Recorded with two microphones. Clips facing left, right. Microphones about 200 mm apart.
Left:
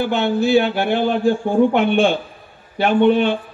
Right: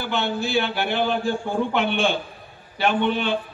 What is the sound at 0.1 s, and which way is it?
A man's voice, 50° left (ahead or behind).